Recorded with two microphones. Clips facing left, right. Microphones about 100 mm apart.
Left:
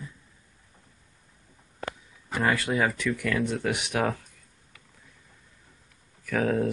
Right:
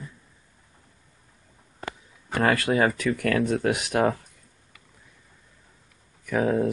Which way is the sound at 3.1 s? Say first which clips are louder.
Right 4 dB; 55° right (ahead or behind).